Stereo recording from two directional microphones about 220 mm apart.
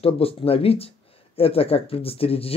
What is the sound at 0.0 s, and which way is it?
Speech, 25° left (ahead or behind).